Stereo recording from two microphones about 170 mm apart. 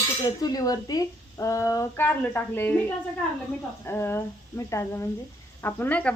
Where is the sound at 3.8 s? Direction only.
15° left (ahead or behind).